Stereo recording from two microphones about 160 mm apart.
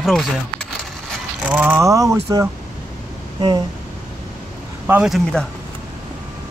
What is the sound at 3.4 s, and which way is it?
Speech, 30° right (ahead or behind).